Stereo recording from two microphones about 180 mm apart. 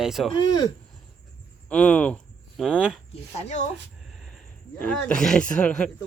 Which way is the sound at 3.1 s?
40° left (ahead or behind).